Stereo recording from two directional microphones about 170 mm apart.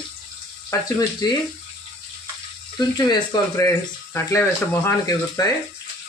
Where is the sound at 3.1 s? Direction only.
20° left (ahead or behind).